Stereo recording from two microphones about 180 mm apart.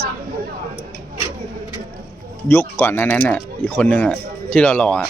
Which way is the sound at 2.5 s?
15° left (ahead or behind).